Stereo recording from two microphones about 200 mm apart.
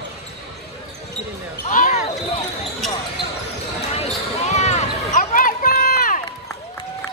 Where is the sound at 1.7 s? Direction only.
40° left (ahead or behind).